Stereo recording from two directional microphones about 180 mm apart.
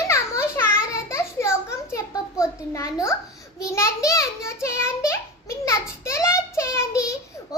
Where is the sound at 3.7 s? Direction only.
15° left (ahead or behind).